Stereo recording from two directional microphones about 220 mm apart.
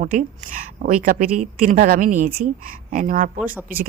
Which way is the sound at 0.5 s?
40° right (ahead or behind).